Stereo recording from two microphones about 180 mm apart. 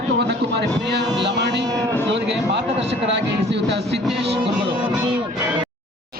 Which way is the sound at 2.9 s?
75° right (ahead or behind).